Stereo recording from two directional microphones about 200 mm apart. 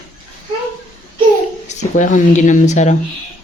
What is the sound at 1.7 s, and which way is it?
Speech, 35° left (ahead or behind).